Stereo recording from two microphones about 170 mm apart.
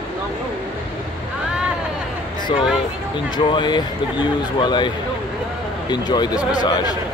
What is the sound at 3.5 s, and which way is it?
Speech, 25° left (ahead or behind).